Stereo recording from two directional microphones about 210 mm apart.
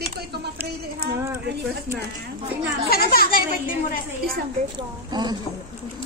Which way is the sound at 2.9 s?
45° left (ahead or behind).